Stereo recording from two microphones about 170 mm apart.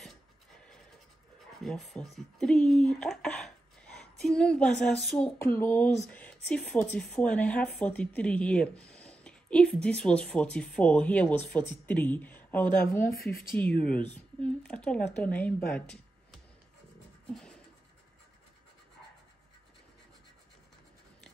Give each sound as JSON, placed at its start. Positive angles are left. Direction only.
{"t": 1.6, "sound": "speech", "side_deg": 0}
{"t": 5.4, "sound": "speech", "side_deg": 15}
{"t": 17.3, "sound": "a sound", "side_deg": 5}